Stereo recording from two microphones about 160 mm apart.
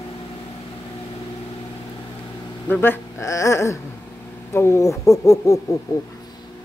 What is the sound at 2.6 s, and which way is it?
Speech, 10° left (ahead or behind).